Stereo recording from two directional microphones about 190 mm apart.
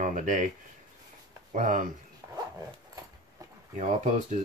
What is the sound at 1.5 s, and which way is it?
Speech, 45° right (ahead or behind).